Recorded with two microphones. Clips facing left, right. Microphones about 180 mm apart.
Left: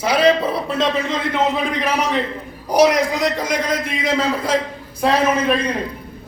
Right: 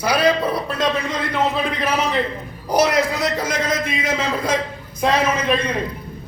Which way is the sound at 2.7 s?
15° left (ahead or behind).